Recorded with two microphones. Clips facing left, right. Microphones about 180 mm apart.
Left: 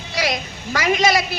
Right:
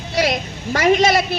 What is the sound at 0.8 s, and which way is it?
Speech, 55° right (ahead or behind).